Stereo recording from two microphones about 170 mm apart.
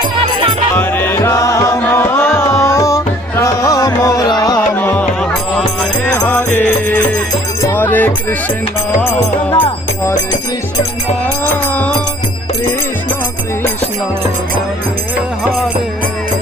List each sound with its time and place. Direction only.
0.2 s music: 30° right (ahead or behind)
0.8 s music: 10° left (ahead or behind)
6.2 s music: 10° left (ahead or behind)
9.6 s music: 15° left (ahead or behind)